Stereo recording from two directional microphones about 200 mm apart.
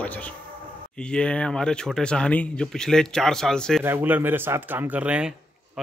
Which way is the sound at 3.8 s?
10° right (ahead or behind).